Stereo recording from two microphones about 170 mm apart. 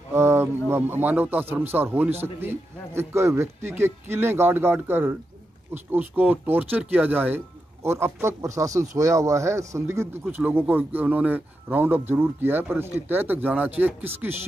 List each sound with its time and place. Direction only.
0.1 s speech: 15° right (ahead or behind)